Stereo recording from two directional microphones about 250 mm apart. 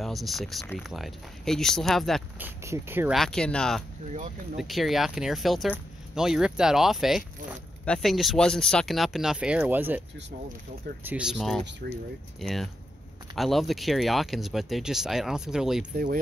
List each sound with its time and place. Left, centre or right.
0.0 s speech: centre
11.1 s speech: centre
11.8 s speech: right
12.4 s speech: centre